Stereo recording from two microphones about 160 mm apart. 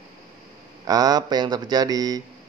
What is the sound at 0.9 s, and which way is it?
Speech, 25° right (ahead or behind).